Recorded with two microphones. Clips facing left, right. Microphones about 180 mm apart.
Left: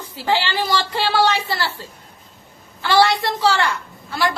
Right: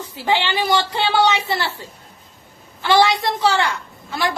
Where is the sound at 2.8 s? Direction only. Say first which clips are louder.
Even; 15° right (ahead or behind).